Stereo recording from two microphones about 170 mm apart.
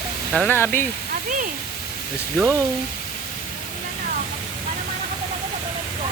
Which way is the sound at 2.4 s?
15° right (ahead or behind).